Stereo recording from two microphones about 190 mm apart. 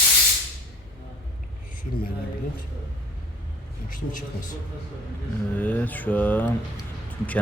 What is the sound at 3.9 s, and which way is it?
Speech, 45° left (ahead or behind).